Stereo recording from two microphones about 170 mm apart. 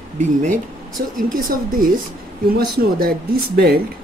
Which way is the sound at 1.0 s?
65° right (ahead or behind).